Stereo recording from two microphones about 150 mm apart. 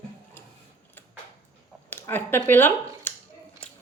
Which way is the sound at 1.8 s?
15° left (ahead or behind).